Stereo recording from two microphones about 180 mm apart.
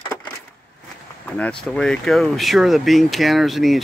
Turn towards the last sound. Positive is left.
turn(degrees=0)  # may be behind; listen again after turning